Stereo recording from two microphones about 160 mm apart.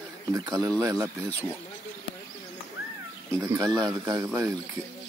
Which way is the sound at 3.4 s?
15° right (ahead or behind).